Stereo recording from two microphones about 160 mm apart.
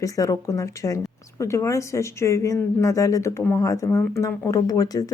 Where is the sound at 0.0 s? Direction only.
20° left (ahead or behind).